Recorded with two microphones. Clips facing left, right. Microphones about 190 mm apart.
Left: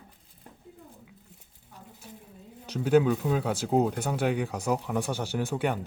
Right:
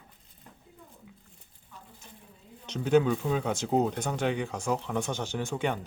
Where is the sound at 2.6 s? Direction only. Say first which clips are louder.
Left 1 dB; 5° left (ahead or behind).